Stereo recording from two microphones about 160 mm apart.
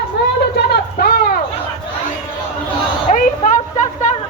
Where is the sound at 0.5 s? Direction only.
80° left.